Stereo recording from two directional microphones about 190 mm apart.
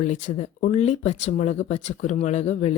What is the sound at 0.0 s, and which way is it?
Speech, 40° left (ahead or behind).